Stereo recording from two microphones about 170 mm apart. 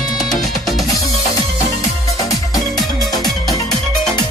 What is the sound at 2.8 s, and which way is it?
Music, centre (ahead or behind).